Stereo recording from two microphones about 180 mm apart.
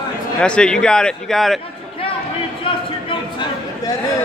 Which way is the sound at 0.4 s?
5° left (ahead or behind).